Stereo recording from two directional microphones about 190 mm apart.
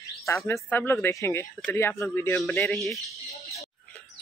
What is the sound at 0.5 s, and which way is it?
Speech, 10° left (ahead or behind).